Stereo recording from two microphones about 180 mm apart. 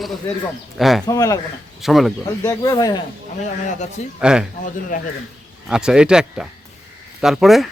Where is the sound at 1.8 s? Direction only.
Centre (ahead or behind).